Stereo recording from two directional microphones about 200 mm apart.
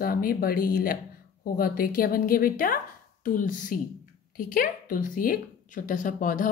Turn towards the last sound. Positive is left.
turn(degrees=40)  # may be behind; listen again after turning